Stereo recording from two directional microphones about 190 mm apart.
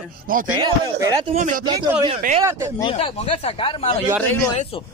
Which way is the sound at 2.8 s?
30° left (ahead or behind).